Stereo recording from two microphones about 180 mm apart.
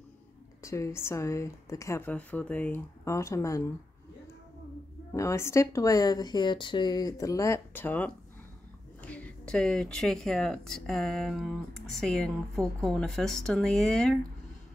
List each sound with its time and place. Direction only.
0.6 s a woman's voice: 15° left (ahead or behind)
5.1 s a woman's voice: 15° left (ahead or behind)